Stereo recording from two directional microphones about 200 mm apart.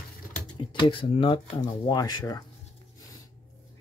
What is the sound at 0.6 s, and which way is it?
Speech, 25° left (ahead or behind).